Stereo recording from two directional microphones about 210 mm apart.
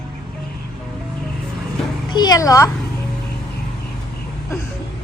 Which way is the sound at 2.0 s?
20° left (ahead or behind).